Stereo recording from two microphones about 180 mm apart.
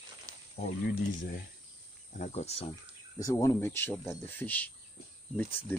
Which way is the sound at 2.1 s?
40° left (ahead or behind).